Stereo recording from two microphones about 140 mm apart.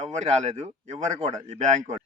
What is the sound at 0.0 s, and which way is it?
Speech, 55° right (ahead or behind).